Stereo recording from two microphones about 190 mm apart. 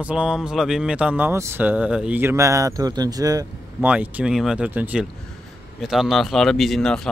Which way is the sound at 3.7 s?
5° right (ahead or behind).